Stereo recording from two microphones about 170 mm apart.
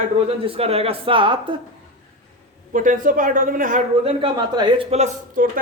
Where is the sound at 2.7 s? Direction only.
50° right (ahead or behind).